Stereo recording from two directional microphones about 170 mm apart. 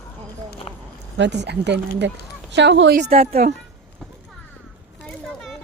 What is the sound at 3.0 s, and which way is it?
Speech, 40° right (ahead or behind).